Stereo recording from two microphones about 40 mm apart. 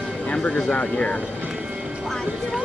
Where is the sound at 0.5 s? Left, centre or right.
Left.